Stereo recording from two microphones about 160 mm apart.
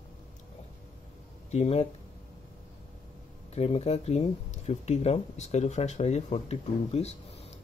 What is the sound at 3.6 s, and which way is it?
Speech, 40° left (ahead or behind).